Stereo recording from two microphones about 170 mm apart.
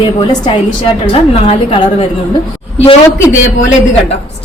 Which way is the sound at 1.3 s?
35° left (ahead or behind).